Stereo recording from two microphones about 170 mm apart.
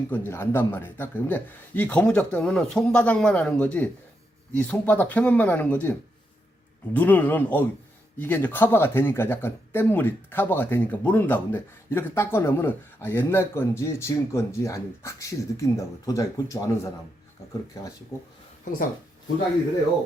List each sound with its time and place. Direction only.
0.1 s speech: 10° left (ahead or behind)